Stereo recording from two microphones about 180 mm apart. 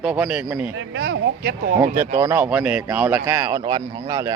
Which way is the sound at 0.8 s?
90° right.